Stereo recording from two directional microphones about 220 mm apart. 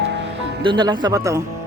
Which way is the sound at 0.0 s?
50° right (ahead or behind).